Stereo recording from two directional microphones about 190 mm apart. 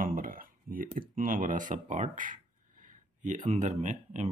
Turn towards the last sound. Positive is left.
turn(degrees=-40)  # may be behind; listen again after turning